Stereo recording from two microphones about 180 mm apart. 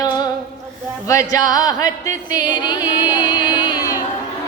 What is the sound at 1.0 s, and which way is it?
Music, 15° left (ahead or behind).